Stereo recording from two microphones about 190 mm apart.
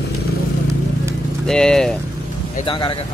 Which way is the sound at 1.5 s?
5° left (ahead or behind).